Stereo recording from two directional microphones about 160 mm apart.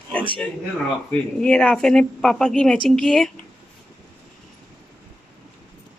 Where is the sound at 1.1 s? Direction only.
5° left (ahead or behind).